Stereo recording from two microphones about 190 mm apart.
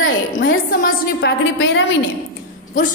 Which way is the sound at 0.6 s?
50° left (ahead or behind).